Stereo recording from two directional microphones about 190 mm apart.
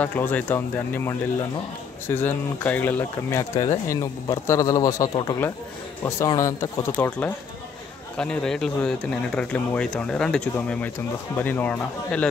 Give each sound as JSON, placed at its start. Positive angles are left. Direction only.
{"t": 0.0, "sound": "speech", "side_deg": 10}